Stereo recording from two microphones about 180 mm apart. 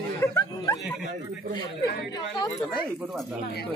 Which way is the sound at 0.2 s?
20° left (ahead or behind).